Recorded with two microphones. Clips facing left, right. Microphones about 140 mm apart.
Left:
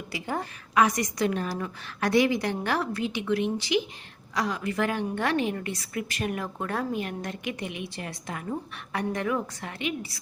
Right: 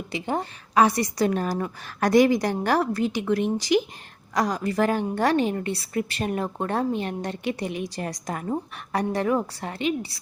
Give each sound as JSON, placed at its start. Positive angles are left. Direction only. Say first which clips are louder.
{"t": 0.1, "sound": "a woman's voice", "louder": "right 4 dB", "side_deg": -25}